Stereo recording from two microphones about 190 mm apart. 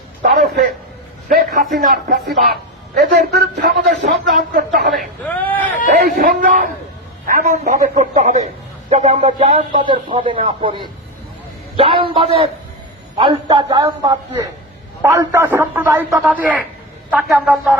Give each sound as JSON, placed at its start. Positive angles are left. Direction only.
{"t": 0.2, "sound": "a man's voice", "side_deg": -60}
{"t": 4.9, "sound": "speech", "side_deg": 10}
{"t": 6.1, "sound": "a man's voice", "side_deg": -50}